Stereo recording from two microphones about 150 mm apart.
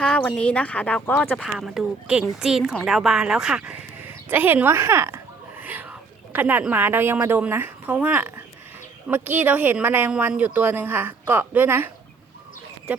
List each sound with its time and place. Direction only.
0.0 s speech: 5° left (ahead or behind)
1.4 s a woman's voice: centre (ahead or behind)